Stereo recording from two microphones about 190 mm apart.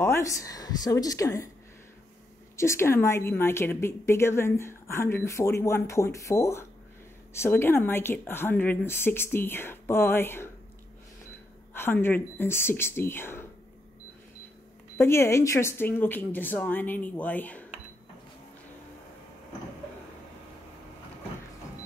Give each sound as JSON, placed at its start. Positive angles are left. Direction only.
{"t": 0.0, "sound": "a woman's voice", "side_deg": 15}
{"t": 2.5, "sound": "a woman's voice", "side_deg": 15}
{"t": 11.7, "sound": "a woman's voice", "side_deg": 10}
{"t": 15.0, "sound": "a woman's voice", "side_deg": 15}